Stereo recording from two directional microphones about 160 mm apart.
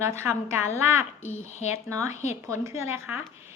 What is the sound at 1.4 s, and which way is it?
Speech, 45° left (ahead or behind).